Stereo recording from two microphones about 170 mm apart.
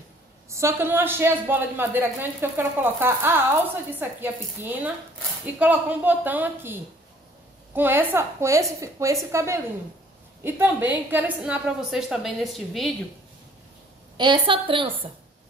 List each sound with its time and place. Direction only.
0.5 s a woman's voice: 15° right (ahead or behind); by 12.9 s centre (ahead or behind)
14.1 s a woman's voice: 25° right (ahead or behind)